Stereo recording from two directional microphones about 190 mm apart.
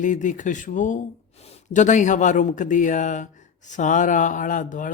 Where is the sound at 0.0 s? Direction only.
40° left (ahead or behind).